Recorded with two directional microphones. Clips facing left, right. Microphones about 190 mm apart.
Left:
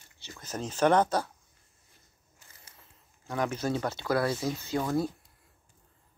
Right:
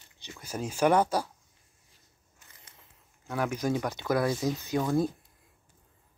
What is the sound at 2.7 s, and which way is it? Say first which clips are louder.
Speech: even; 10° right (ahead or behind).